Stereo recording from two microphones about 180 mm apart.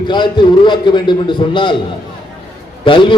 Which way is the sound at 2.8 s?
25° left (ahead or behind).